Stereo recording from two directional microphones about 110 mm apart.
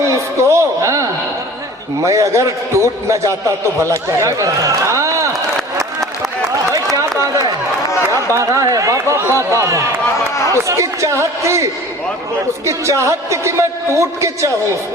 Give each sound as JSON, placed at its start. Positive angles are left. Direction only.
{"t": 0.4, "sound": "a sound", "side_deg": -25}
{"t": 2.0, "sound": "a man's voice", "side_deg": -30}
{"t": 6.9, "sound": "a sound", "side_deg": -30}
{"t": 8.0, "sound": "speech", "side_deg": -25}
{"t": 10.3, "sound": "run", "side_deg": 30}
{"t": 10.7, "sound": "speech", "side_deg": -30}